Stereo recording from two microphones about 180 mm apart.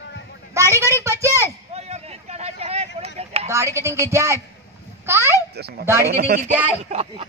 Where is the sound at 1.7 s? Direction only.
35° right (ahead or behind).